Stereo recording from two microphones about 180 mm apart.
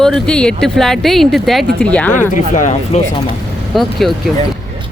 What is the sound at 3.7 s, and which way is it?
Speech, centre (ahead or behind).